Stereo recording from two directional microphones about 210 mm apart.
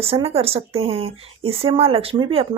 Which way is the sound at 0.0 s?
30° right (ahead or behind).